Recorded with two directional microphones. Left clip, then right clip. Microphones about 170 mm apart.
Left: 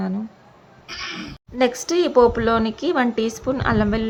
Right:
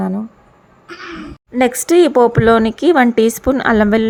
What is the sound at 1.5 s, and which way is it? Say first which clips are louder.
Speech: right 8 dB; 40° right (ahead or behind).